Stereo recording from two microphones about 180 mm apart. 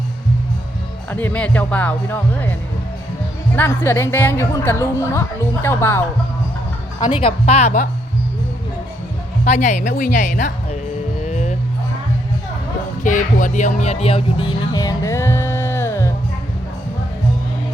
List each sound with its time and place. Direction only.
1.1 s a woman's voice: 10° left (ahead or behind)
7.0 s speech: 30° left (ahead or behind)
9.4 s speech: 40° left (ahead or behind)
11.3 s music: 40° left (ahead or behind)
13.0 s speech: 45° left (ahead or behind); by 16.1 s 15° left (ahead or behind)